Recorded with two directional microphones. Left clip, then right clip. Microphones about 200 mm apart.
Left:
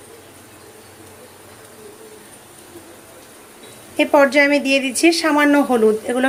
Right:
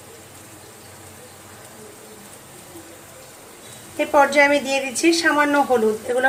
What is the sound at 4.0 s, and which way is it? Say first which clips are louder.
A woman's voice: left 2 dB; 40° left (ahead or behind).